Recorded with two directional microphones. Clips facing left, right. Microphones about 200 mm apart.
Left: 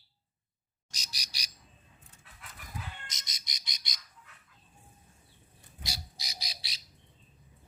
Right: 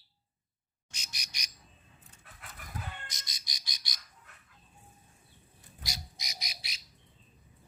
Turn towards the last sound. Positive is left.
turn(degrees=30)  # may be behind; listen again after turning